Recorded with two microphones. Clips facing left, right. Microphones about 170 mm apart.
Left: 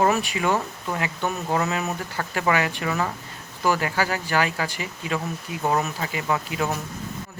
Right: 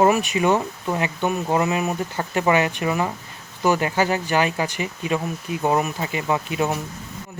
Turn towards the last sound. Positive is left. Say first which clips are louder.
# right 3 dB
turn(degrees=-20)  # may be behind; listen again after turning